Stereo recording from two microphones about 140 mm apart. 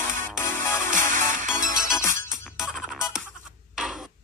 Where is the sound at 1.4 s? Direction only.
65° right (ahead or behind).